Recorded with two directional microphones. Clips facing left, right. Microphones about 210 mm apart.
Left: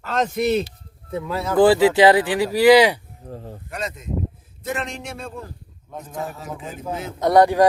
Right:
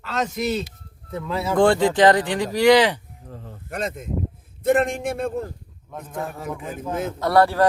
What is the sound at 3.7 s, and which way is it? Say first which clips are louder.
A man's voice: right 2 dB; 55° right (ahead or behind).